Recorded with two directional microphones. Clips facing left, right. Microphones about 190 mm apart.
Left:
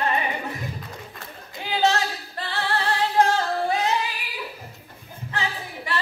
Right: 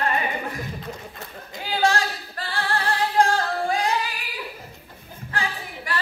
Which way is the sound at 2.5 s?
20° left (ahead or behind).